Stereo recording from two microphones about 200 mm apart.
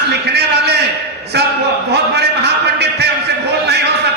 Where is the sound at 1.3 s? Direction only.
55° right (ahead or behind).